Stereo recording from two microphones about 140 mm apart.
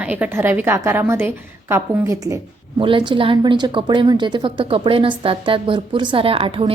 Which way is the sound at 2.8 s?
35° right (ahead or behind).